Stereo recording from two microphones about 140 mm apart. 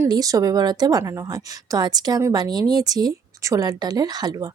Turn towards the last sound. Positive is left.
turn(degrees=-30)  # may be behind; listen again after turning